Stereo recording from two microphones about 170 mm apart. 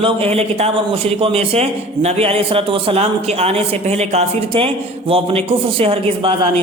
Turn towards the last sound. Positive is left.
turn(degrees=-35)  # may be behind; listen again after turning